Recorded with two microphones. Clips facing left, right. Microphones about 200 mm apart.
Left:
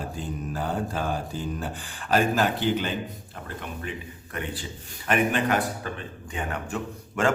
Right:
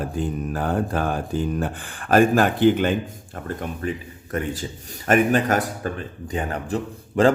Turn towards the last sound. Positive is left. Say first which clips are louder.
# right 7 dB
turn(degrees=-35)  # may be behind; listen again after turning